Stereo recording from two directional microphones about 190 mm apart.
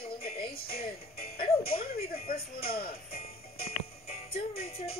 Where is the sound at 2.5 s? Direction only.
50° left (ahead or behind).